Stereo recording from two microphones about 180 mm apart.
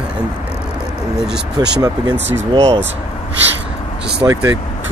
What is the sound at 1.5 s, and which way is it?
Speech, 20° right (ahead or behind).